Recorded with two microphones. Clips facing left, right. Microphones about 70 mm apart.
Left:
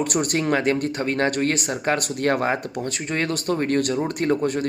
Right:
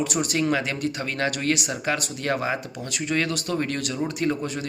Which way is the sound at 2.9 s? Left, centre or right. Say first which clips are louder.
Right 2 dB; left.